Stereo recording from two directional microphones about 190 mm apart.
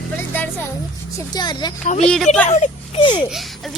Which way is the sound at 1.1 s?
20° left (ahead or behind).